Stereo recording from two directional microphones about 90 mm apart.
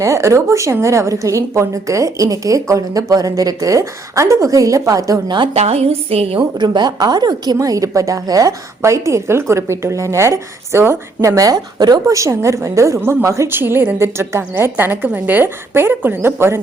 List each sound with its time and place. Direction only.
0.0 s a woman's voice: 35° right (ahead or behind)
5.9 s a woman's voice: 90° right
6.6 s a woman's voice: 55° right (ahead or behind); by 16.6 s 30° right (ahead or behind)